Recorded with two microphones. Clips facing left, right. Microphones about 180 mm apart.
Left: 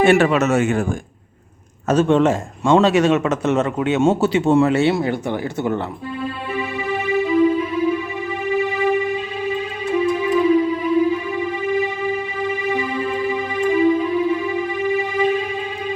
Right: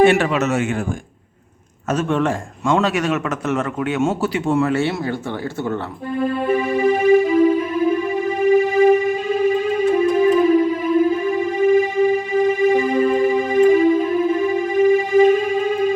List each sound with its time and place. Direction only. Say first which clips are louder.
0.0 s a man's voice: even; 45° left (ahead or behind)
1.9 s a man's voice: left 4 dB; 30° left (ahead or behind)
6.1 s music: right 8 dB; 45° right (ahead or behind)